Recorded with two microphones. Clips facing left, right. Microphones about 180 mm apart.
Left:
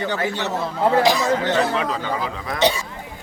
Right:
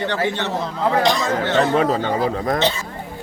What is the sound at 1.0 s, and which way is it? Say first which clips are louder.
Speech: left 1 dB; 5° left (ahead or behind).